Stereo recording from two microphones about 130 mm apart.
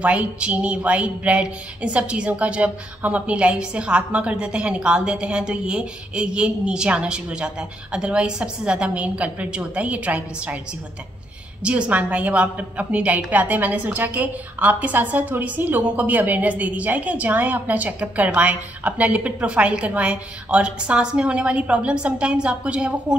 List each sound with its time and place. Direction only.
0.0 s a woman's voice: 10° right (ahead or behind)
11.6 s a woman's voice: 10° right (ahead or behind)